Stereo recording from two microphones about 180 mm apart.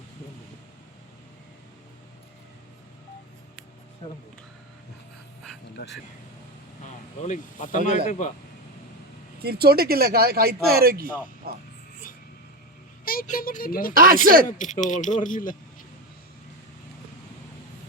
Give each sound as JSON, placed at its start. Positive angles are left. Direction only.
{"t": 5.8, "sound": "speech", "side_deg": 65}
{"t": 7.3, "sound": "speech", "side_deg": 45}
{"t": 9.4, "sound": "speech", "side_deg": -60}
{"t": 13.1, "sound": "speech", "side_deg": 50}
{"t": 13.9, "sound": "speech", "side_deg": -50}
{"t": 14.4, "sound": "speech", "side_deg": 45}